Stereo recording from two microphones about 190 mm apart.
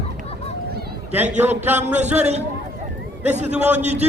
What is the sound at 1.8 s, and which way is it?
Speech, 35° right (ahead or behind).